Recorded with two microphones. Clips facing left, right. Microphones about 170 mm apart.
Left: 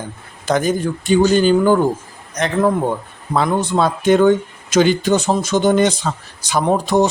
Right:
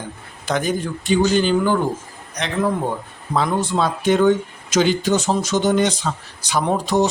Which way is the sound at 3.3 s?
55° left (ahead or behind).